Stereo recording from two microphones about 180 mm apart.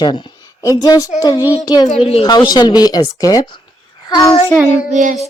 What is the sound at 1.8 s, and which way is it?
A woman's voice, 35° left (ahead or behind).